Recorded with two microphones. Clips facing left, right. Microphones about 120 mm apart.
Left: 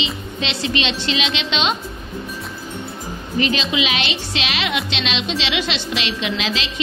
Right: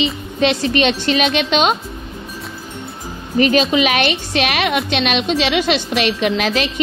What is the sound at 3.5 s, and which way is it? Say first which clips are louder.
A woman's voice: right 7 dB; 50° right (ahead or behind).